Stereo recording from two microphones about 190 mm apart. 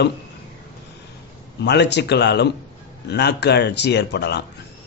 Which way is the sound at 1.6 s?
65° left (ahead or behind).